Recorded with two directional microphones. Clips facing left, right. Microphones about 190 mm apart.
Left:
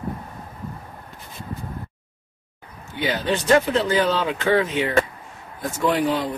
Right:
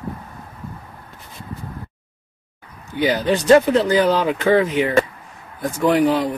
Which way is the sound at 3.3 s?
35° right (ahead or behind).